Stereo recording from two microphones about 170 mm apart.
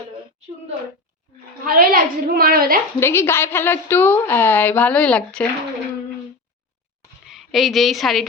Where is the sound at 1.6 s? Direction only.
55° right (ahead or behind).